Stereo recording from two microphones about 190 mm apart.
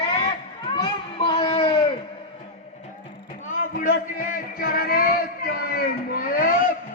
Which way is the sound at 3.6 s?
45° left (ahead or behind).